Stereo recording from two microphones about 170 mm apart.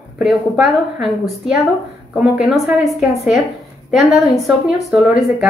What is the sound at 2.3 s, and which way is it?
A woman's voice, centre (ahead or behind).